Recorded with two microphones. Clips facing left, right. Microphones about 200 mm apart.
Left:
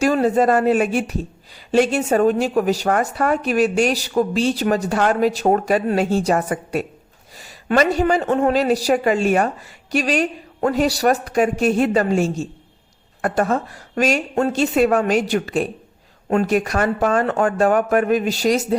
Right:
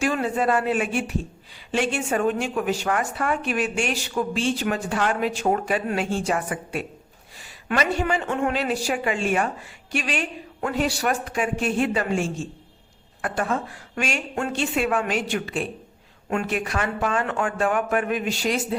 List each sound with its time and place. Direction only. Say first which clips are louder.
0.0 s a woman's voice: left 7 dB; 40° left (ahead or behind)